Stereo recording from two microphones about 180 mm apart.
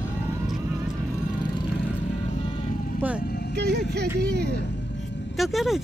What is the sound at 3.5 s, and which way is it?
Music, 65° right (ahead or behind).